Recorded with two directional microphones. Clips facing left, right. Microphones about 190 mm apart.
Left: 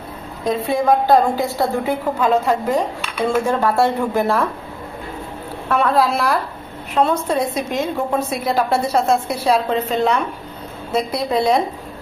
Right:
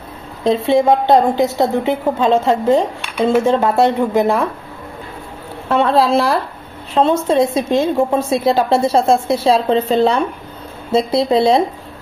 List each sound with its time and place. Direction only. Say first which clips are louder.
0.4 s a woman's voice: right 6 dB; 25° right (ahead or behind)
5.7 s a woman's voice: right 3 dB; 25° right (ahead or behind)